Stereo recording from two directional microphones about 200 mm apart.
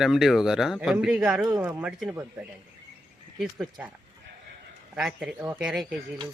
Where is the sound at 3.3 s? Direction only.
5° right (ahead or behind).